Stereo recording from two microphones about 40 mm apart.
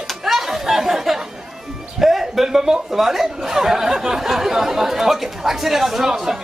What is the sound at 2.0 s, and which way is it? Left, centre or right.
A man's voice, centre.